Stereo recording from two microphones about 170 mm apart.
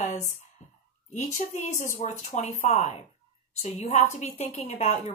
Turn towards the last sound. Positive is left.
turn(degrees=45)  # may be behind; listen again after turning